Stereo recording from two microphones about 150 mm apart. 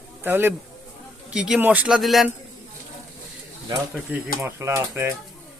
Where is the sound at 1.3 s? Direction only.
5° right (ahead or behind).